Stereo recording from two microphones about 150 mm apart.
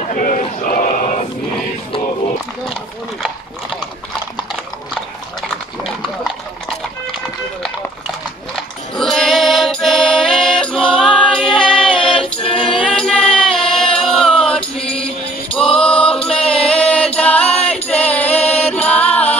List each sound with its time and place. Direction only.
0.1 s a sound: 65° left (ahead or behind)
8.9 s music: centre (ahead or behind)
12.5 s music: 35° left (ahead or behind)
12.8 s music: 5° left (ahead or behind)
17.8 s female singing: 10° left (ahead or behind)
18.7 s music: 10° left (ahead or behind)